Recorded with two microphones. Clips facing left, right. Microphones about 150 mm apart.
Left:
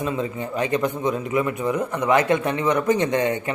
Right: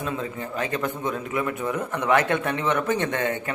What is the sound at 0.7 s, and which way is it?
A man's voice, 15° left (ahead or behind).